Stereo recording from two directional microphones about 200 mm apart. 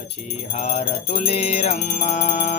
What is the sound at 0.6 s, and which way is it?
Music, 35° left (ahead or behind).